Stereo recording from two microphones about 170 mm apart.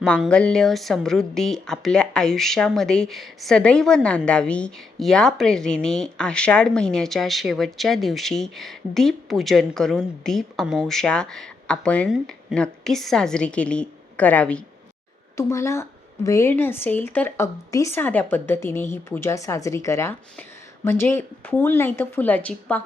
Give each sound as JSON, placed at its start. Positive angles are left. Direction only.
{"t": 0.0, "sound": "a woman's voice", "side_deg": 5}